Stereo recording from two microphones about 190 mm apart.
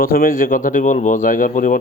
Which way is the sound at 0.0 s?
50° left (ahead or behind).